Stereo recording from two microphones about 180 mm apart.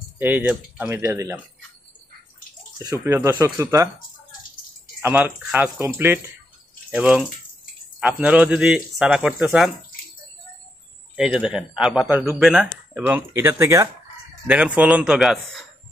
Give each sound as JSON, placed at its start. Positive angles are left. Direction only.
{"t": 0.2, "sound": "speech", "side_deg": -10}
{"t": 2.8, "sound": "speech", "side_deg": -20}
{"t": 5.0, "sound": "speech", "side_deg": -10}
{"t": 11.1, "sound": "speech", "side_deg": -5}
{"t": 14.8, "sound": "speech", "side_deg": -5}